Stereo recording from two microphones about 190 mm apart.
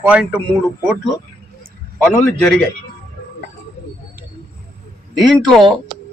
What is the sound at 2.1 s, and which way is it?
Speech, 5° left (ahead or behind).